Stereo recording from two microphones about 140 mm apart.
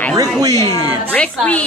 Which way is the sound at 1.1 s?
10° left (ahead or behind).